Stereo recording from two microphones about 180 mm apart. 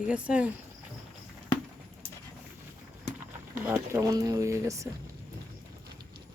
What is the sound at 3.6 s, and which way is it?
Speech, 15° right (ahead or behind).